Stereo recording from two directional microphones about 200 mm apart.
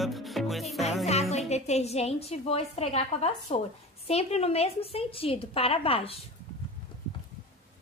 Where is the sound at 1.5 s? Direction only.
35° left (ahead or behind).